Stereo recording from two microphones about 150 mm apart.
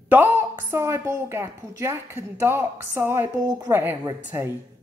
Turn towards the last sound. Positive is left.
turn(degrees=-15)  # may be behind; listen again after turning